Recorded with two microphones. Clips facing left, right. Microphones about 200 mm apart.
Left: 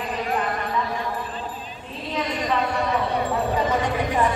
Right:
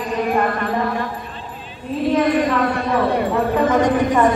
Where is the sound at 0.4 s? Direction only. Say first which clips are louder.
Right 6 dB; 60° right (ahead or behind).